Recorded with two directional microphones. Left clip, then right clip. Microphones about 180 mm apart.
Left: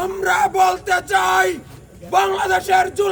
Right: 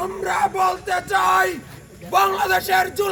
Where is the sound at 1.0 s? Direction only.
30° left (ahead or behind).